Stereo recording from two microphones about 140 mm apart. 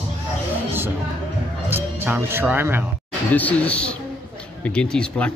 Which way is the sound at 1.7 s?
15° right (ahead or behind).